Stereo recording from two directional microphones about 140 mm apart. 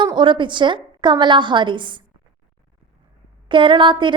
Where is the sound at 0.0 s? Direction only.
35° right (ahead or behind).